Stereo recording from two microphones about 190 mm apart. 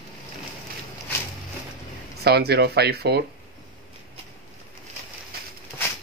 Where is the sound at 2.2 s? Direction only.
60° right (ahead or behind).